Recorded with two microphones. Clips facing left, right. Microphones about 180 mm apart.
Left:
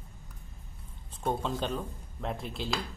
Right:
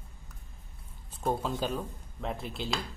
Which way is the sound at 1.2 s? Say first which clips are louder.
Right 1 dB; centre (ahead or behind).